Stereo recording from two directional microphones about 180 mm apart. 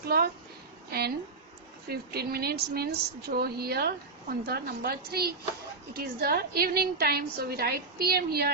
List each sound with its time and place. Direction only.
0.9 s a woman's voice: 60° right (ahead or behind)